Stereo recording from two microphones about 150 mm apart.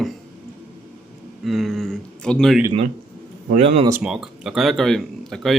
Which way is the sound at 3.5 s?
45° right (ahead or behind).